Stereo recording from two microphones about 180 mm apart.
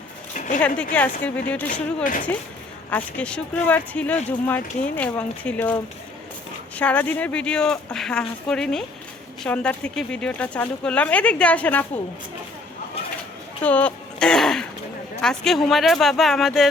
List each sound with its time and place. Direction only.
0.3 s a sound: 45° left (ahead or behind)
0.8 s speech: 10° left (ahead or behind)
13.6 s speech: 10° left (ahead or behind)